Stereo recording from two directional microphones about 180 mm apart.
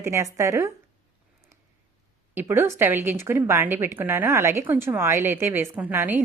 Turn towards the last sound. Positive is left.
turn(degrees=-10)  # may be behind; listen again after turning